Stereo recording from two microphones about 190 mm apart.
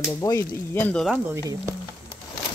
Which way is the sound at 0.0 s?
15° left (ahead or behind).